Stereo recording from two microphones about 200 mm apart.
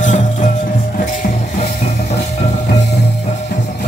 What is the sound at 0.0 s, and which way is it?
Music, 40° left (ahead or behind).